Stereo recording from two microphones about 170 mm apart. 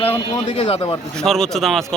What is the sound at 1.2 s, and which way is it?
Speech, 5° left (ahead or behind).